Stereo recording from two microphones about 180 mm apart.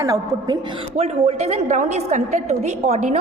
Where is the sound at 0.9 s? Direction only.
35° right (ahead or behind).